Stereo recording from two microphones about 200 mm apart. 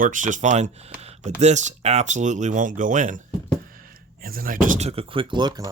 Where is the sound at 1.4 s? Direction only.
35° right (ahead or behind).